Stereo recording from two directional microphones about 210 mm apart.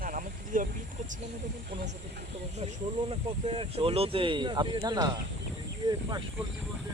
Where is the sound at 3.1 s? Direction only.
25° right (ahead or behind).